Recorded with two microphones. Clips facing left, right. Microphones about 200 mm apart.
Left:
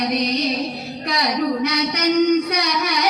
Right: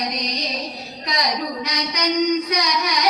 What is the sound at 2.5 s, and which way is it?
Singing, 60° left (ahead or behind).